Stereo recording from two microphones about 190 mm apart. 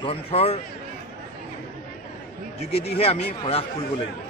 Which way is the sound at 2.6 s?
30° left (ahead or behind).